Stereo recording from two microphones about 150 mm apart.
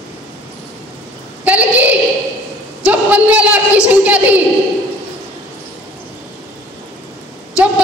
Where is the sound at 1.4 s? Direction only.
10° right (ahead or behind).